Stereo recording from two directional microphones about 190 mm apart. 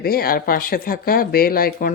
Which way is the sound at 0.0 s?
50° left (ahead or behind).